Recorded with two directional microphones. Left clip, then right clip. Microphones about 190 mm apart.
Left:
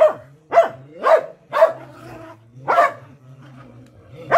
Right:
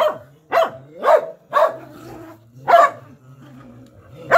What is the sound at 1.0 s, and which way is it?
Dog, 10° right (ahead or behind).